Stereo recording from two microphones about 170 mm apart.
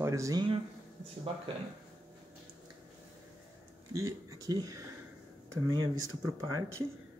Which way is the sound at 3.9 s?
20° right (ahead or behind).